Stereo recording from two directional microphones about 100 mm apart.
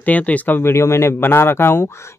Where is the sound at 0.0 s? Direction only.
15° left (ahead or behind).